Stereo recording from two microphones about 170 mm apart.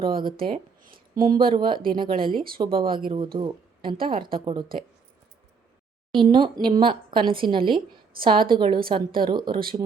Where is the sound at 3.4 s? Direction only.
30° right (ahead or behind).